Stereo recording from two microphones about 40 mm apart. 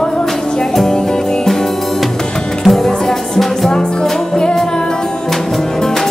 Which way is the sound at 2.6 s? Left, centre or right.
Centre.